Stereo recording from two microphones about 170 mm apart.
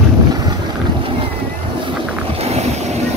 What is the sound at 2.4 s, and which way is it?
Boat, 40° right (ahead or behind).